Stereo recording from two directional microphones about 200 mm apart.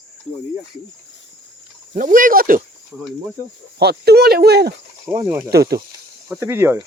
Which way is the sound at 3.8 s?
55° right (ahead or behind).